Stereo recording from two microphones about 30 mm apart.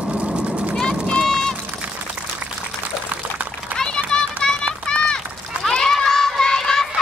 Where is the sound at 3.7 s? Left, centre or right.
Left.